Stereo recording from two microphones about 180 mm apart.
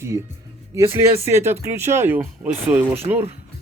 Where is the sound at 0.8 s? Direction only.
15° right (ahead or behind).